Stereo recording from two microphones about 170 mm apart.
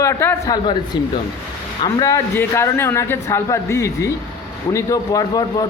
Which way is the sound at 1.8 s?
20° left (ahead or behind).